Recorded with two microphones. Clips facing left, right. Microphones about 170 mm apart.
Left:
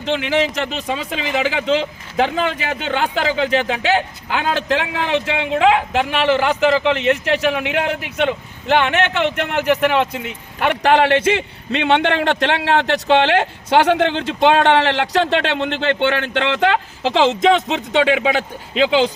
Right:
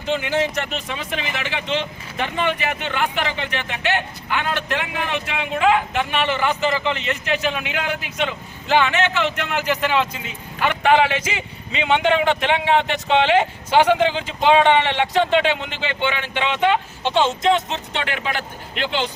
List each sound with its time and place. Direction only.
0.0 s a man's voice: 90° left
1.8 s a man's voice: 90° left